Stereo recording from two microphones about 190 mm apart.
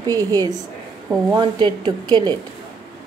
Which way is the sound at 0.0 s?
20° right (ahead or behind).